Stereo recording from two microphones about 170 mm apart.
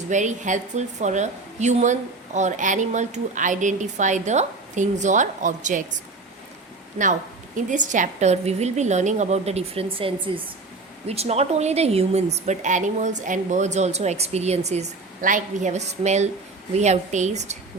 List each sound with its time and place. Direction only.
0.1 s a woman's voice: 45° right (ahead or behind)
7.7 s a woman's voice: 45° right (ahead or behind)